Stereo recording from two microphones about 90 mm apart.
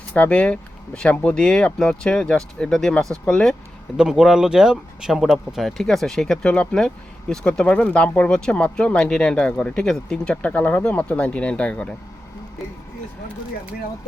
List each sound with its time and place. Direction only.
0.1 s speech: 15° left (ahead or behind)
3.9 s speech: 10° right (ahead or behind); by 11.9 s 10° left (ahead or behind)